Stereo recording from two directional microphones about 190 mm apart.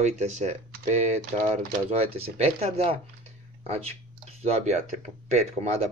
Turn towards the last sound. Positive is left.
turn(degrees=-35)  # may be behind; listen again after turning